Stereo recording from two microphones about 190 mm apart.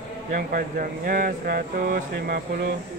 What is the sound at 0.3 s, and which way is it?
Speech, 45° right (ahead or behind).